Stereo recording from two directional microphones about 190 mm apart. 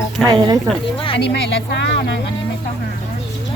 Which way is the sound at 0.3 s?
20° right (ahead or behind).